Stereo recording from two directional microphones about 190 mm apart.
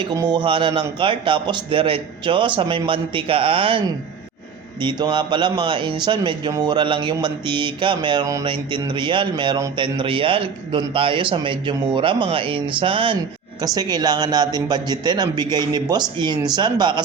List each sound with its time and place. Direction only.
0.0 s speech: 20° right (ahead or behind)